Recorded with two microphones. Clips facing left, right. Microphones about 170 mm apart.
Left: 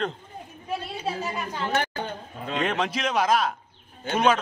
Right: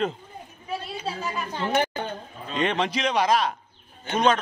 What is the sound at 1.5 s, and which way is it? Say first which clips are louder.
Speech: right 3 dB; 15° right (ahead or behind).